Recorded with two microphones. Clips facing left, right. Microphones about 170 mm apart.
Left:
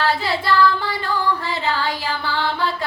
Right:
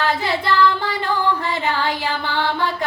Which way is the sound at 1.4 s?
20° right (ahead or behind).